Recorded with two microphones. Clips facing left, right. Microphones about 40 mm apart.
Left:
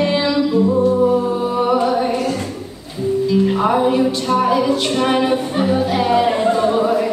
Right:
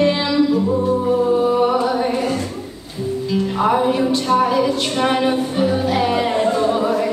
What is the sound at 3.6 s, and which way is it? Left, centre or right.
Music, centre.